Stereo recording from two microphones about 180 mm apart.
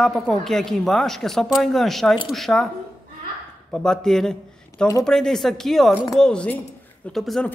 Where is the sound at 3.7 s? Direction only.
5° left (ahead or behind).